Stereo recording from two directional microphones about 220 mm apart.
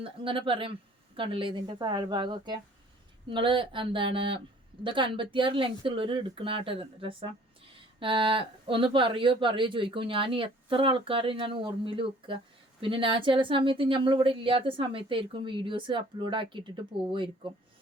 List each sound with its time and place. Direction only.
0.0 s speech: 25° right (ahead or behind)